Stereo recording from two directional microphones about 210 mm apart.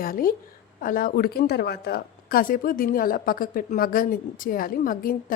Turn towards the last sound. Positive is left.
turn(degrees=40)  # may be behind; listen again after turning